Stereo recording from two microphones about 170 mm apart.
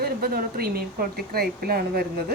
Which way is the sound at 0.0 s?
60° right (ahead or behind).